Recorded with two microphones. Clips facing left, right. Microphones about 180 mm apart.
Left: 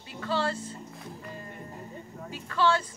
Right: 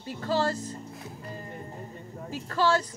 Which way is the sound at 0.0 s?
40° right (ahead or behind).